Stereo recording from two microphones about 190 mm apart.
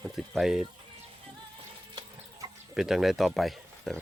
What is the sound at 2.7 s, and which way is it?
Speech, centre (ahead or behind).